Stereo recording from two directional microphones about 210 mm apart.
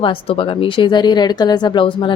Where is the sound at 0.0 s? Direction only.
25° left (ahead or behind).